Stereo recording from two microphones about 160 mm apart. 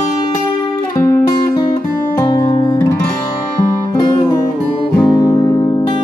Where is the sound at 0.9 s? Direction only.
20° left (ahead or behind).